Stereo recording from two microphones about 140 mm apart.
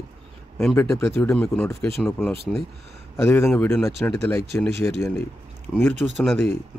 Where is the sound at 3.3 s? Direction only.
15° left (ahead or behind).